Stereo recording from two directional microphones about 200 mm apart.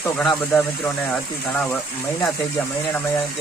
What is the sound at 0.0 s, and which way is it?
Speech, 5° left (ahead or behind).